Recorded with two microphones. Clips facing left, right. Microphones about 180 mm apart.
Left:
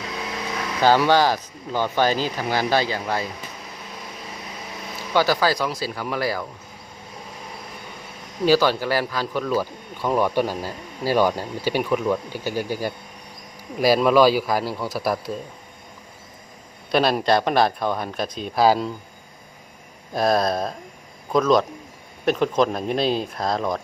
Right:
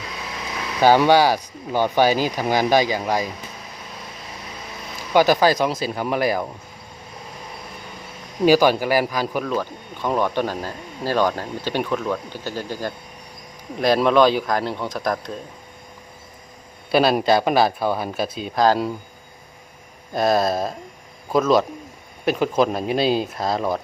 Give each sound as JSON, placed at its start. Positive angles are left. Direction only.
{"t": 0.8, "sound": "speech", "side_deg": -15}
{"t": 5.1, "sound": "speech", "side_deg": -20}
{"t": 8.4, "sound": "speech", "side_deg": -15}
{"t": 9.5, "sound": "a man's voice", "side_deg": 5}
{"t": 16.9, "sound": "a man's voice", "side_deg": 0}
{"t": 20.1, "sound": "a man's voice", "side_deg": 0}